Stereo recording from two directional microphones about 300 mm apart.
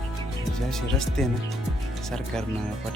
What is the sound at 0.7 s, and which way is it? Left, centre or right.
Speech, centre.